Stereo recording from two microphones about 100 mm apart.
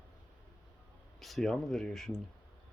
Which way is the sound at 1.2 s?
Centre (ahead or behind).